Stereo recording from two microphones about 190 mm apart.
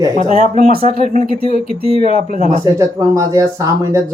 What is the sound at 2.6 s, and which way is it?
Speech, 15° right (ahead or behind).